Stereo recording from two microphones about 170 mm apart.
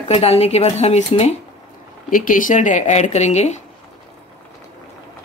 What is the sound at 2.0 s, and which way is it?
Speech, 50° left (ahead or behind).